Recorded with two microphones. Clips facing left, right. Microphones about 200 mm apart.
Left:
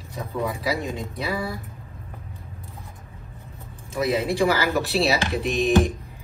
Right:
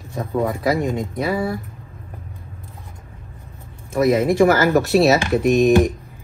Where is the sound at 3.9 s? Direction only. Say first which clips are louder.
Right 7 dB; 50° right (ahead or behind).